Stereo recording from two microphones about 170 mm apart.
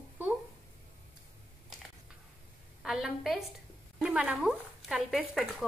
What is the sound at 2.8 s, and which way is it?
A woman's voice, 5° right (ahead or behind).